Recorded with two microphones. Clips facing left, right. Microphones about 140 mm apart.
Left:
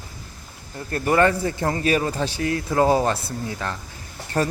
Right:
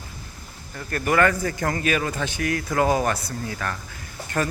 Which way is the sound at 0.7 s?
25° left (ahead or behind).